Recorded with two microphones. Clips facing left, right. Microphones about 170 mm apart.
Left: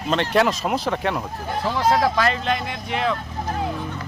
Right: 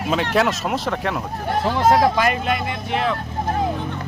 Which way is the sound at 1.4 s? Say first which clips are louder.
Right 5 dB; 60° right (ahead or behind).